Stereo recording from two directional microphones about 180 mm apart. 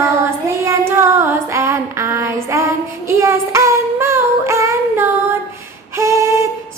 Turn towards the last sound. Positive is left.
turn(degrees=-15)  # may be behind; listen again after turning